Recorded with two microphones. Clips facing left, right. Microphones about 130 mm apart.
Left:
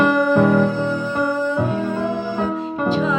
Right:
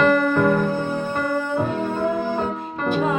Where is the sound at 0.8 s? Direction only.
55° right (ahead or behind).